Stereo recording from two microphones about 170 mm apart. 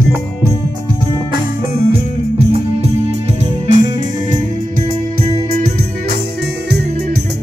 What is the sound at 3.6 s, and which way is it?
Music, 45° right (ahead or behind).